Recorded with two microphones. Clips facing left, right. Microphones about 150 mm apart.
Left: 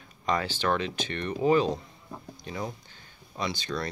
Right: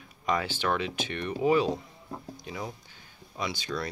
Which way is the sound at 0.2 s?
10° right (ahead or behind).